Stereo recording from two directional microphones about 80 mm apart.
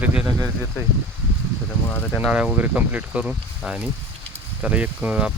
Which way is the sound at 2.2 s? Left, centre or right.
Centre.